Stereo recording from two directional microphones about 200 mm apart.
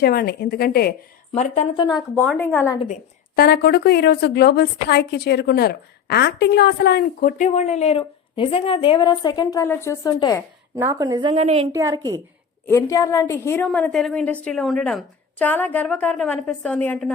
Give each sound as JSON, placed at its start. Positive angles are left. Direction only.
{"t": 0.0, "sound": "a woman's voice", "side_deg": 50}
{"t": 1.3, "sound": "speech", "side_deg": 35}
{"t": 1.8, "sound": "speech", "side_deg": 20}
{"t": 2.1, "sound": "a woman's voice", "side_deg": 5}
{"t": 3.3, "sound": "a woman's voice", "side_deg": 50}
{"t": 10.8, "sound": "a woman's voice", "side_deg": -15}
{"t": 11.7, "sound": "a woman's voice", "side_deg": -15}
{"t": 12.6, "sound": "a woman's voice", "side_deg": 15}